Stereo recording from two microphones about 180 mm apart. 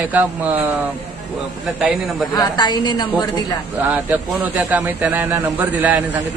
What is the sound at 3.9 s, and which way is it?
A man's voice, 10° right (ahead or behind).